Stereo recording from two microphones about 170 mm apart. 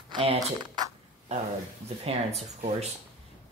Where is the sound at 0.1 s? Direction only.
30° right (ahead or behind).